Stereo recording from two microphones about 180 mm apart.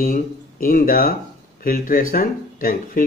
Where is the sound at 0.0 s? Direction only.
50° left (ahead or behind).